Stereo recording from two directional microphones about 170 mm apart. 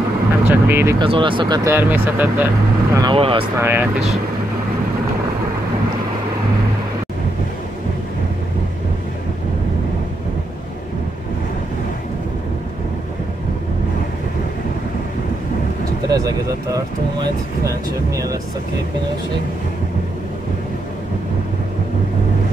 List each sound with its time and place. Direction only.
0.5 s speech: 10° right (ahead or behind)
0.9 s speech: 30° right (ahead or behind); by 3.0 s 10° right (ahead or behind)
3.0 s speech: 30° right (ahead or behind)
3.5 s speech: 15° right (ahead or behind)
16.1 s speech: 20° right (ahead or behind)